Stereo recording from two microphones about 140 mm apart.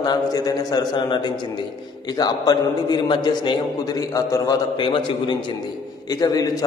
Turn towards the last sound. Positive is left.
turn(degrees=25)  # may be behind; listen again after turning